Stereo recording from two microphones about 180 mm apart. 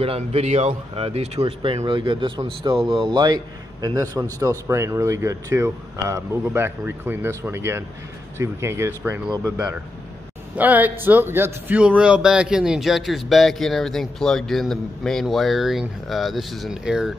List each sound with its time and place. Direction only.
0.0 s speech: 30° right (ahead or behind); by 9.3 s 10° right (ahead or behind)
10.6 s speech: 10° right (ahead or behind)